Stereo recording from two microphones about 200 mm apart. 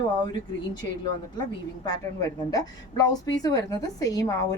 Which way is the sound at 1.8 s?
20° left (ahead or behind).